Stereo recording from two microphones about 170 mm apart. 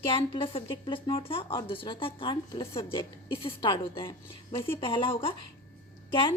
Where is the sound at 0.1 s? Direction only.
30° left (ahead or behind).